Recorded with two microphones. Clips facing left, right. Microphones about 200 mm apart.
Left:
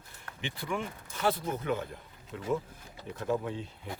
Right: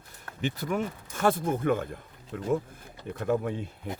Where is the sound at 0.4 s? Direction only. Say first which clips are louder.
Right 6 dB; 40° right (ahead or behind).